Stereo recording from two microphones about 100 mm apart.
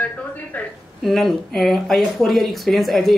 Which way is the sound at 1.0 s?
Centre (ahead or behind).